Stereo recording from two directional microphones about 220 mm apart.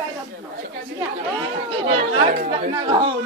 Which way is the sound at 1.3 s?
25° right (ahead or behind).